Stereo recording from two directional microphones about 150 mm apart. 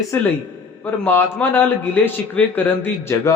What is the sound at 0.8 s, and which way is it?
A man's voice, 15° left (ahead or behind).